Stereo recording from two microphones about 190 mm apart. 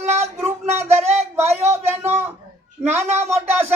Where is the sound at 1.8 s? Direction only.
10° right (ahead or behind).